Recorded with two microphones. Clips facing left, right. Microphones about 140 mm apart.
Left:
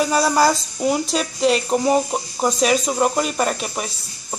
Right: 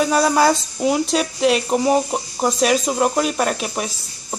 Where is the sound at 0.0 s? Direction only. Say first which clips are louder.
Right 1 dB; centre (ahead or behind).